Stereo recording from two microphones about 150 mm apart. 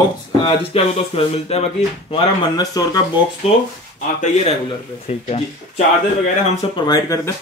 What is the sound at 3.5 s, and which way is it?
Speech, 40° left (ahead or behind).